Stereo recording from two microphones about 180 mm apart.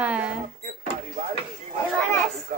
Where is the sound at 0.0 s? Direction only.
5° right (ahead or behind).